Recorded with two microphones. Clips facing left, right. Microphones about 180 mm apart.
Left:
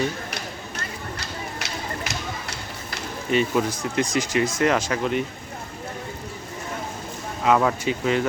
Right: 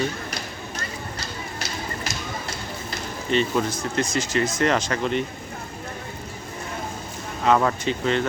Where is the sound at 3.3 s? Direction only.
10° left (ahead or behind).